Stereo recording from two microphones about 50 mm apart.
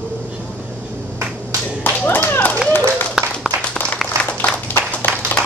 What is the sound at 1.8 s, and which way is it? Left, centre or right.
Clapping, left.